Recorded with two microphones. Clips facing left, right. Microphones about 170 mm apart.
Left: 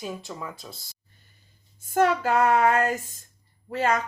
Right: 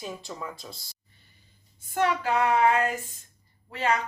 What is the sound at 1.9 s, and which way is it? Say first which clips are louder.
Child singing: left 4 dB; 40° left (ahead or behind).